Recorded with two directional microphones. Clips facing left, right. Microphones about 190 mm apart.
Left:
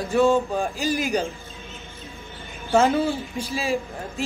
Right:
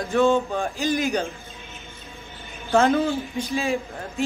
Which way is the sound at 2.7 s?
10° left (ahead or behind).